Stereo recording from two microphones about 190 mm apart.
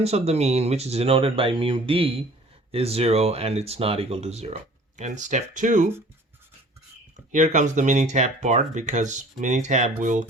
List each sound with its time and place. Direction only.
0.0 s speech: 35° right (ahead or behind)
7.3 s speech: 40° right (ahead or behind)